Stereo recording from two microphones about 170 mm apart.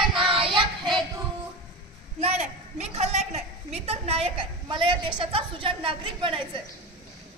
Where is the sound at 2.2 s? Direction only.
40° right (ahead or behind).